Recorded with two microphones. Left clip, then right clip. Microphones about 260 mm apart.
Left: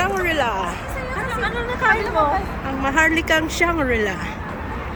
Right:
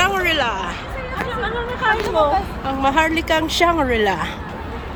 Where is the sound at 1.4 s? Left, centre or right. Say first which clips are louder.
Left 1 dB; centre.